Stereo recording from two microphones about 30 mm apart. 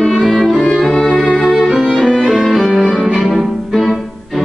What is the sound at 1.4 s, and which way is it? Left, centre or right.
Violin, centre.